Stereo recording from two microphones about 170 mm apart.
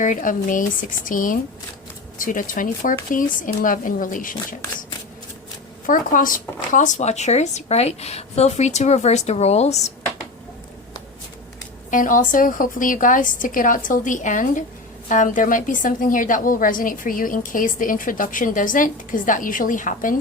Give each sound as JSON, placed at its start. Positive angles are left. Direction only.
{"t": 0.0, "sound": "a woman's voice", "side_deg": 50}
{"t": 5.8, "sound": "speech", "side_deg": 50}
{"t": 11.9, "sound": "a woman's voice", "side_deg": 50}